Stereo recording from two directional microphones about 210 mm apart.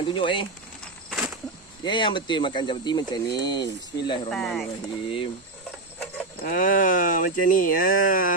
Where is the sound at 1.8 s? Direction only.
20° left (ahead or behind).